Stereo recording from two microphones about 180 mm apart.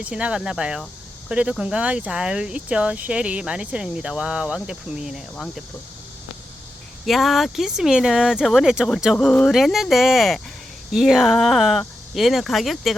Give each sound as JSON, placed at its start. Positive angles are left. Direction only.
{"t": 0.0, "sound": "speech", "side_deg": -5}
{"t": 7.0, "sound": "speech", "side_deg": 0}